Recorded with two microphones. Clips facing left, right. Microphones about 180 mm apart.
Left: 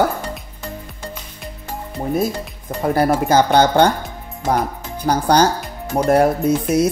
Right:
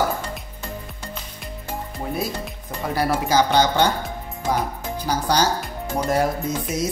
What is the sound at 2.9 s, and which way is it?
Speech, 55° left (ahead or behind).